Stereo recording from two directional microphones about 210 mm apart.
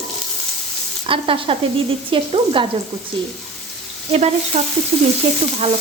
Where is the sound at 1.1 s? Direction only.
25° right (ahead or behind).